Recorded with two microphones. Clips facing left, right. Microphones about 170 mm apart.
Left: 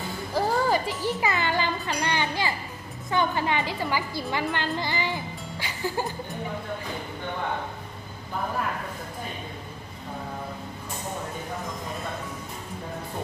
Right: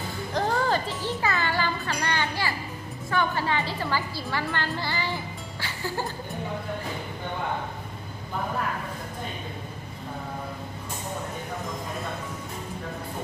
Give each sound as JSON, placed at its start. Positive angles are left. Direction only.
{"t": 0.3, "sound": "music", "side_deg": 5}
{"t": 3.1, "sound": "a woman's voice", "side_deg": 20}